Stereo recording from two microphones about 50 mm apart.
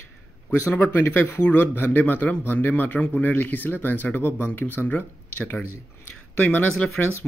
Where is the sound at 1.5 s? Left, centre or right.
Left.